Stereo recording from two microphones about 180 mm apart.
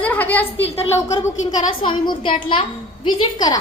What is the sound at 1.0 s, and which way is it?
A woman's voice, 15° left (ahead or behind).